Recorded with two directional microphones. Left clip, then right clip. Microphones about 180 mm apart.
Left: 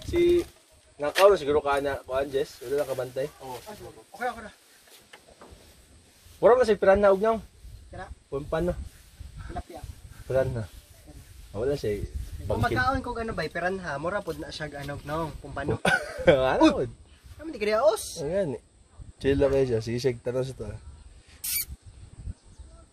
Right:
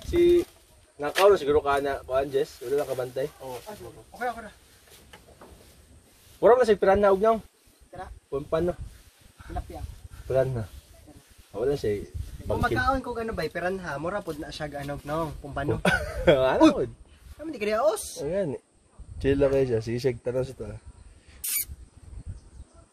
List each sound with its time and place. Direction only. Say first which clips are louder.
1.2 s speech: even; 10° left (ahead or behind)
3.6 s speech: right 1 dB; 10° right (ahead or behind)
6.4 s speech: even; 10° left (ahead or behind)
10.2 s speech: right 1 dB; 15° left (ahead or behind)
12.5 s speech: right 1 dB; 15° right (ahead or behind)
15.8 s speech: left 1 dB; 15° left (ahead or behind)
17.4 s speech: left 1 dB; 30° right (ahead or behind)
18.2 s speech: even; 20° left (ahead or behind)